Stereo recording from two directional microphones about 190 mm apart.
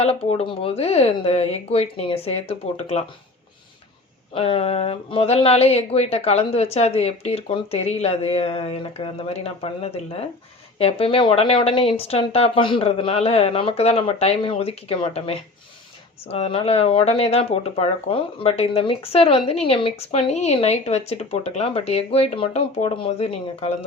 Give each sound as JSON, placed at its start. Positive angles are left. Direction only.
{"t": 0.0, "sound": "speech", "side_deg": 30}
{"t": 4.4, "sound": "speech", "side_deg": 30}